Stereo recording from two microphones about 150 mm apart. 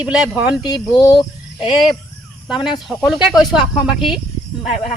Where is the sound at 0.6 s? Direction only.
30° left (ahead or behind).